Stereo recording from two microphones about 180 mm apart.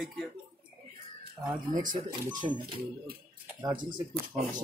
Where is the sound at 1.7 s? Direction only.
45° right (ahead or behind).